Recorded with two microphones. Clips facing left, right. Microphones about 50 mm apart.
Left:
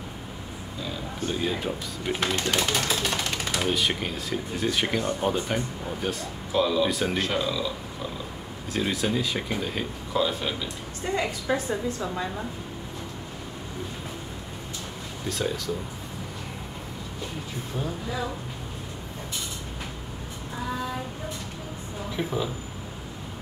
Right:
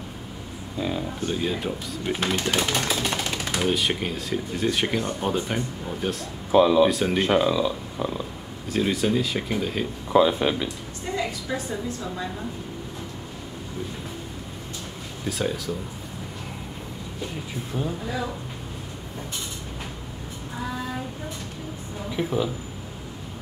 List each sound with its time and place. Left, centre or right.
1.2 s speech: centre
6.5 s speech: right
6.9 s speech: centre
7.2 s speech: right
8.7 s speech: centre
10.1 s speech: right
11.1 s a woman's voice: left
15.2 s speech: centre
17.7 s speech: centre
22.1 s speech: centre